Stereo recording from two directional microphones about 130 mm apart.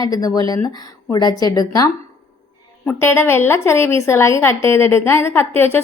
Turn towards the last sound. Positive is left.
turn(degrees=20)  # may be behind; listen again after turning